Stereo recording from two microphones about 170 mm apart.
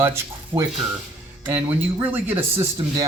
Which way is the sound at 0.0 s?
15° right (ahead or behind).